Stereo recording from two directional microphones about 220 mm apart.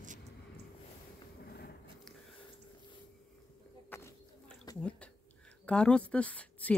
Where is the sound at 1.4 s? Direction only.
45° left (ahead or behind).